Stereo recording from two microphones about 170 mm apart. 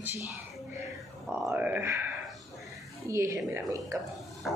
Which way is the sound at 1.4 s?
10° right (ahead or behind).